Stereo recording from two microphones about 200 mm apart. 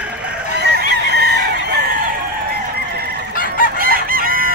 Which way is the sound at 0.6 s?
55° right (ahead or behind).